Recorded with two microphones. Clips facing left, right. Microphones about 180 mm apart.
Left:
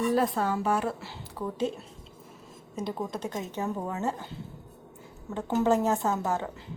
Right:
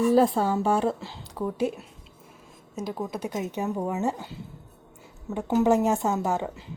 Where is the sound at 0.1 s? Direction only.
30° right (ahead or behind); by 4.3 s 15° right (ahead or behind).